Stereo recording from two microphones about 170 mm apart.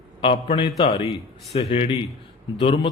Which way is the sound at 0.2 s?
30° left (ahead or behind).